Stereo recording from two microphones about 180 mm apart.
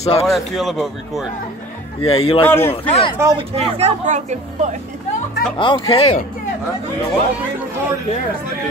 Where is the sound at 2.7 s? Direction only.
35° left (ahead or behind).